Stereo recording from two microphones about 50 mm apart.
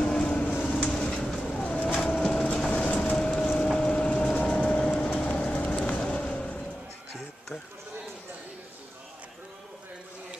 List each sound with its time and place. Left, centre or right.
0.0 s a sound: left
0.4 s a sound: left
0.8 s vehicle: centre
1.4 s bird: centre
2.0 s vehicle: centre
2.5 s train: centre
3.6 s a sound: centre
4.5 s train: left
5.1 s vehicle: left